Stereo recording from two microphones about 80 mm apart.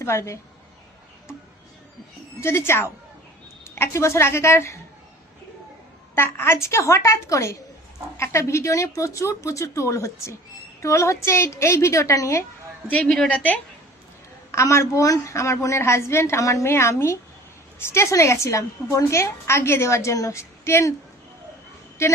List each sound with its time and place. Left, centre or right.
0.0 s a woman's voice: left
2.4 s a woman's voice: left
6.1 s a woman's voice: left
13.2 s a woman's voice: left
14.5 s a woman's voice: left